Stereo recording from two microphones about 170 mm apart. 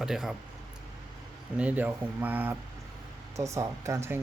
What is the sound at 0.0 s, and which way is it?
Speech, 5° right (ahead or behind).